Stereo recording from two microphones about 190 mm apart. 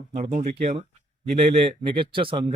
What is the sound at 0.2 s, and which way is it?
Speech, 35° right (ahead or behind).